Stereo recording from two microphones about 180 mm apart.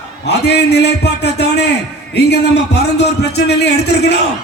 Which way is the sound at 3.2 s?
70° left (ahead or behind).